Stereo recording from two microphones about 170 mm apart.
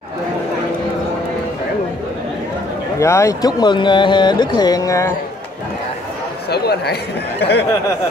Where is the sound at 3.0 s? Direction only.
15° left (ahead or behind).